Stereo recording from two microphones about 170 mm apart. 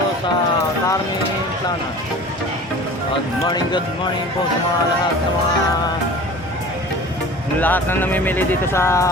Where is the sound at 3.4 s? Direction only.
25° left (ahead or behind).